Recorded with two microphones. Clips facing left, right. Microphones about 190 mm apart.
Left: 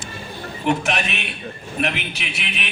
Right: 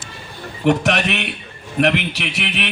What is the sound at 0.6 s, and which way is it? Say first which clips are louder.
A man's voice: right 5 dB; 70° right (ahead or behind).